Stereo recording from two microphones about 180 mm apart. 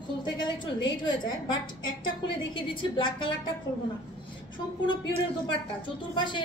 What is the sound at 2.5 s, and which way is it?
Speech, 25° left (ahead or behind).